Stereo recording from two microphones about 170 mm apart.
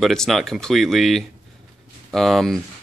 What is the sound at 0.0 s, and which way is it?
Speech, centre (ahead or behind).